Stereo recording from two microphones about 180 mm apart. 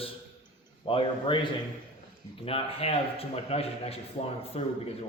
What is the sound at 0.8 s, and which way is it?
A man's voice, 30° left (ahead or behind).